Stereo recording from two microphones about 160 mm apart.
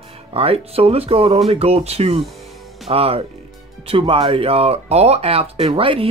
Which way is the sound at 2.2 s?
Centre (ahead or behind).